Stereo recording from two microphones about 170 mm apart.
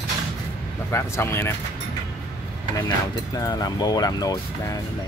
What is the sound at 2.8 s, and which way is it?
Speech, 20° left (ahead or behind).